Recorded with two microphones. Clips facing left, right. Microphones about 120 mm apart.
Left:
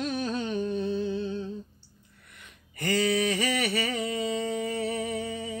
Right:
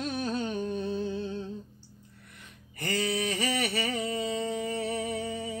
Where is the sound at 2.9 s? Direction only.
30° right (ahead or behind).